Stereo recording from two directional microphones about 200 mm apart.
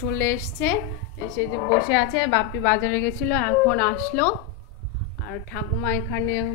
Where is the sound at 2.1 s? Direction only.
75° left (ahead or behind).